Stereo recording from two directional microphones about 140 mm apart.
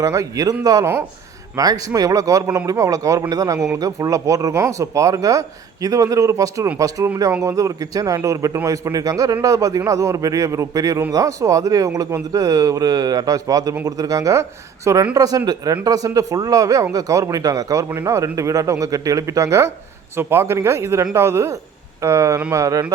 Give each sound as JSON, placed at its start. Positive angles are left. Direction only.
{"t": 0.0, "sound": "speech", "side_deg": -20}